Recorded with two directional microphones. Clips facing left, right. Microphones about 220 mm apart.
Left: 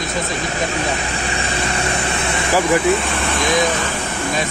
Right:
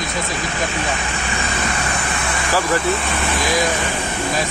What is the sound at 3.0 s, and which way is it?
Speech, centre (ahead or behind).